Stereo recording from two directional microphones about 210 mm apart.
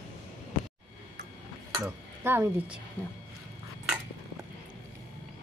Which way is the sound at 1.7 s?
15° right (ahead or behind).